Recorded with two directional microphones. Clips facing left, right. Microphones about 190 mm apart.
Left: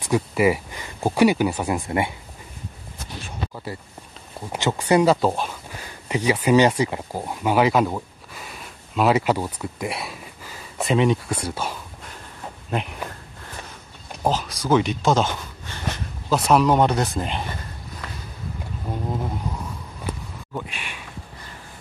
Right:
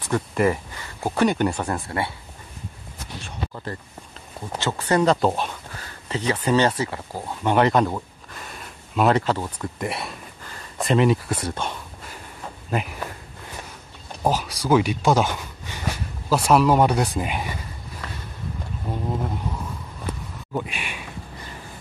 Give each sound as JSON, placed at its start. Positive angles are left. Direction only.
{"t": 0.0, "sound": "speech", "side_deg": 10}
{"t": 3.5, "sound": "speech", "side_deg": 10}
{"t": 5.7, "sound": "speech", "side_deg": 15}
{"t": 14.3, "sound": "speech", "side_deg": -10}
{"t": 18.9, "sound": "a sound", "side_deg": 0}
{"t": 20.5, "sound": "a sound", "side_deg": -10}